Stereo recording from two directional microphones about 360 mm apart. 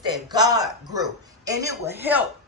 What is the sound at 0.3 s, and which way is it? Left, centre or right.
A woman's voice, centre.